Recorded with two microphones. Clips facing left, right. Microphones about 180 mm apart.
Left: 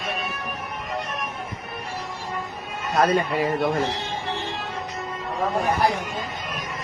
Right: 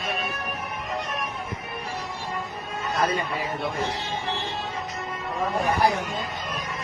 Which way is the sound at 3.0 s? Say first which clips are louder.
Left 6 dB; 60° left (ahead or behind).